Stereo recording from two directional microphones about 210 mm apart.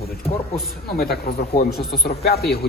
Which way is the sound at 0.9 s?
45° left (ahead or behind).